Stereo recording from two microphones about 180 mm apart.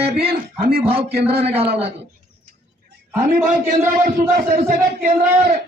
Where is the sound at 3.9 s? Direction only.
45° right (ahead or behind).